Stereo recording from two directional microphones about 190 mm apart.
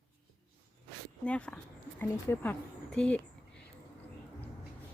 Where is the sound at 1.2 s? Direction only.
5° left (ahead or behind).